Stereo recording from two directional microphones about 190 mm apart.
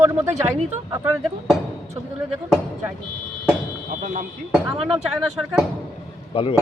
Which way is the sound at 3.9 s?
45° right (ahead or behind).